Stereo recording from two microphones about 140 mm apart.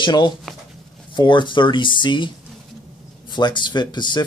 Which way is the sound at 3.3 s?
35° left (ahead or behind).